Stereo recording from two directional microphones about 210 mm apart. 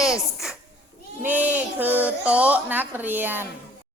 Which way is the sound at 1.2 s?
10° right (ahead or behind).